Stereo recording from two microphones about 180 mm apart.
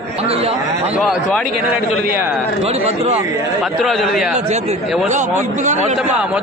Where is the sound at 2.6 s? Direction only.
35° right (ahead or behind).